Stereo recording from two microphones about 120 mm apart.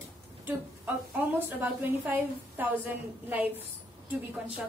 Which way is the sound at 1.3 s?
15° right (ahead or behind).